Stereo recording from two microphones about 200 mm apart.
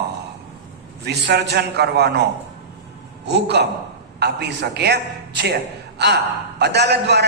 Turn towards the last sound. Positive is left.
turn(degrees=-55)  # may be behind; listen again after turning